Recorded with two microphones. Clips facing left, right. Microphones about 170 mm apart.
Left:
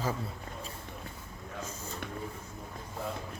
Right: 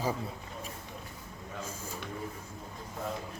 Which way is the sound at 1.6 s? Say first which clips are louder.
Even; 10° right (ahead or behind).